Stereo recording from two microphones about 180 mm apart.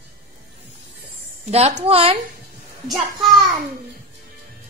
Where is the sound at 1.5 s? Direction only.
35° right (ahead or behind).